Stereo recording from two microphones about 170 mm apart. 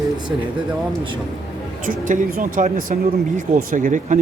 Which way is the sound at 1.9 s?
50° right (ahead or behind).